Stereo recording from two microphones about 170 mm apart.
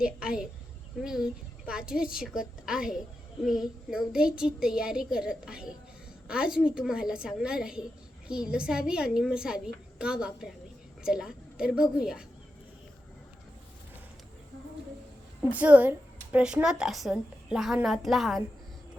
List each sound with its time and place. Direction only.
0.0 s a woman's voice: 5° right (ahead or behind)
15.4 s speech: 10° right (ahead or behind)